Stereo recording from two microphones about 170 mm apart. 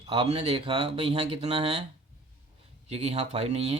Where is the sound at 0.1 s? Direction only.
35° right (ahead or behind).